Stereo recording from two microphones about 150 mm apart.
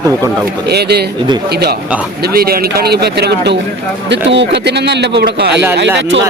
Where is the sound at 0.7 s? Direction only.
90° right.